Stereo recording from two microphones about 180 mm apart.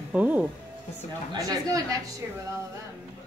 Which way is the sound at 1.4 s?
20° right (ahead or behind).